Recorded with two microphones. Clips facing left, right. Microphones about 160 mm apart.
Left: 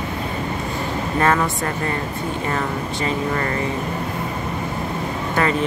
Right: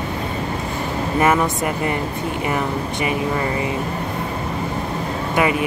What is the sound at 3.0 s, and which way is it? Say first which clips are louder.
Speech: right 1 dB; 10° right (ahead or behind).